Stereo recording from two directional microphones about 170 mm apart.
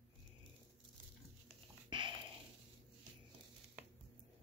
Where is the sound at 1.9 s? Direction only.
30° right (ahead or behind).